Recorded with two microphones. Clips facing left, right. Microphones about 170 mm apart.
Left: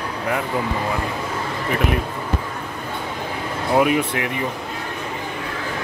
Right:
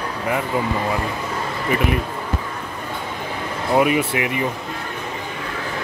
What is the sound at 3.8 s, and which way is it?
Speech, 5° right (ahead or behind).